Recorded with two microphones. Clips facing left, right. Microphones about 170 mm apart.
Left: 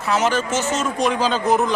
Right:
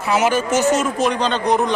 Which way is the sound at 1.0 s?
5° left (ahead or behind).